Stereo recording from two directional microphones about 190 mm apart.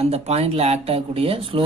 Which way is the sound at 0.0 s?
30° right (ahead or behind).